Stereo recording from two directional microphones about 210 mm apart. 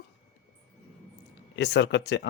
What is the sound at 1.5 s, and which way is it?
Speech, 55° left (ahead or behind).